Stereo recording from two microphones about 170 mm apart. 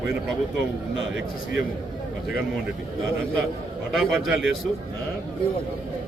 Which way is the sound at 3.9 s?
Centre (ahead or behind).